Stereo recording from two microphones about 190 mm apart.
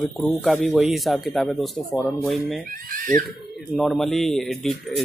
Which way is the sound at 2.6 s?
50° right (ahead or behind).